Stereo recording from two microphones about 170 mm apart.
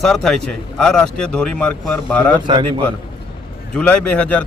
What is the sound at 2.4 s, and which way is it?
Speech, 25° right (ahead or behind).